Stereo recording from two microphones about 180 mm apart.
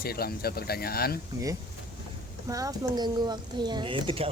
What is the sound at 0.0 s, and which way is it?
Speech, 60° left (ahead or behind).